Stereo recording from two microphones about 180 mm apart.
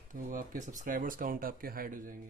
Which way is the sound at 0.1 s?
50° right (ahead or behind).